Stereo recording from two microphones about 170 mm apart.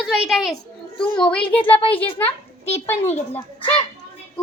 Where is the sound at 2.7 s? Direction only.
40° left (ahead or behind).